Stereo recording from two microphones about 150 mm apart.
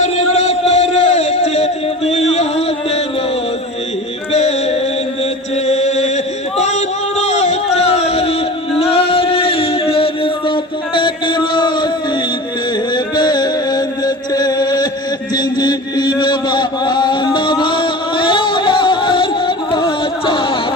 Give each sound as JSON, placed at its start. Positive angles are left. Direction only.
{"t": 0.0, "sound": "a sound", "side_deg": 45}
{"t": 4.3, "sound": "music", "side_deg": 45}
{"t": 5.6, "sound": "chant", "side_deg": 50}
{"t": 6.6, "sound": "a sound", "side_deg": 50}
{"t": 13.1, "sound": "music", "side_deg": 30}
{"t": 15.4, "sound": "chant", "side_deg": 30}